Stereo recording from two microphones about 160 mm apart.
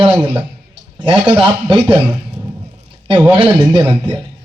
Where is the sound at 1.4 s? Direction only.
30° right (ahead or behind).